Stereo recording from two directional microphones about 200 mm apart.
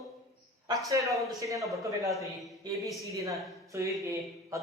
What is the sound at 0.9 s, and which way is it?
A man's voice, 15° right (ahead or behind).